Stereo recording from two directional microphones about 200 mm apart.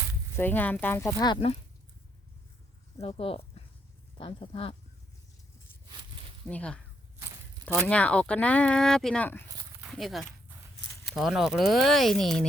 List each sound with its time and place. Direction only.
0.3 s speech: 10° left (ahead or behind); by 1.5 s 25° left (ahead or behind)
3.0 s speech: 30° left (ahead or behind)
6.5 s speech: 5° left (ahead or behind)
7.9 s speech: 5° left (ahead or behind)